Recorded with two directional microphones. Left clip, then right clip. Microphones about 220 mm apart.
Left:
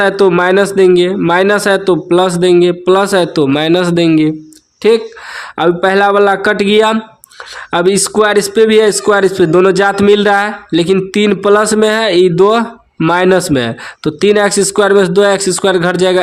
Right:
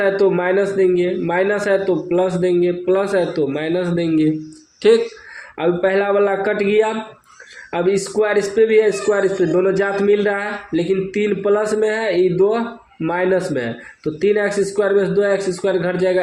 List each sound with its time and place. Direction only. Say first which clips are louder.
0.0 s a man's voice: left 7 dB; 45° left (ahead or behind); by 5.0 s 25° left (ahead or behind)
5.5 s a man's voice: left 7 dB; 40° left (ahead or behind)